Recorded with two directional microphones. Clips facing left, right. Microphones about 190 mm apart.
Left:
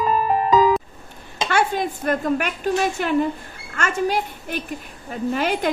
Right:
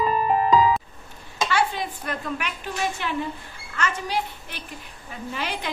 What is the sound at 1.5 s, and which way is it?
A woman's voice, 45° left (ahead or behind).